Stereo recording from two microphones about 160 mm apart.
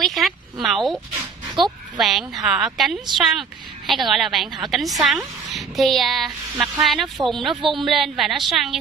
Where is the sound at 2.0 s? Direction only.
Centre (ahead or behind).